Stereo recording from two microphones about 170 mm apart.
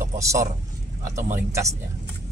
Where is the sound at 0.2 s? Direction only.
20° right (ahead or behind).